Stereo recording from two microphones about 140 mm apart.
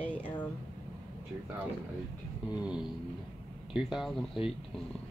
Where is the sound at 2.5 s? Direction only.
5° right (ahead or behind).